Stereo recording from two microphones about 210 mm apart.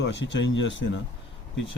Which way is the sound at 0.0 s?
60° left (ahead or behind).